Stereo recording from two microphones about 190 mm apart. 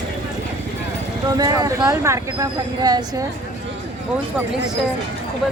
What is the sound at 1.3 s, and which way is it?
Speech, 20° right (ahead or behind).